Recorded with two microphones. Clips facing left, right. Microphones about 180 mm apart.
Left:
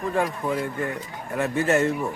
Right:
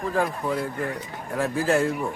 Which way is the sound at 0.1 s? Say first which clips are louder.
Even; centre (ahead or behind).